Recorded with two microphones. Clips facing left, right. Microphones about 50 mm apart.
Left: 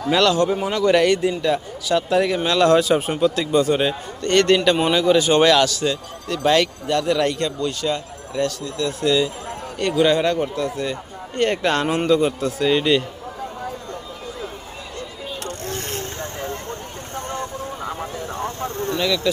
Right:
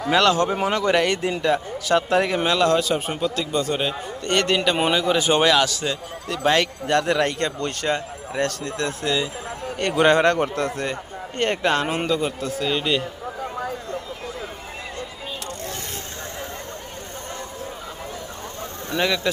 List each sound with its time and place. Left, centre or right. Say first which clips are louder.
0.1 s a man's voice: left 1 dB; right
2.6 s a man's voice: left 8 dB; centre
4.2 s a man's voice: left 5 dB; centre
5.1 s a man's voice: left 3 dB; right
5.4 s a man's voice: left 2 dB; centre
5.6 s a man's voice: left 4 dB; right
6.8 s speech: left 1 dB; right
9.0 s a man's voice: left 7 dB; right
9.7 s speech: even; right
11.5 s a man's voice: left 1 dB; centre
11.8 s a man's voice: left 5 dB; centre
15.4 s vehicle: left 3 dB; left
18.9 s speech: right 1 dB; right